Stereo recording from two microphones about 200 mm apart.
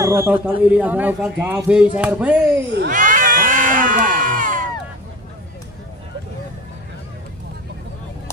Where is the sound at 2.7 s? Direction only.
40° right (ahead or behind).